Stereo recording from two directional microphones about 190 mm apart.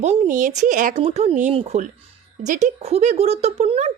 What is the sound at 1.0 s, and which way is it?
Speech, 30° right (ahead or behind).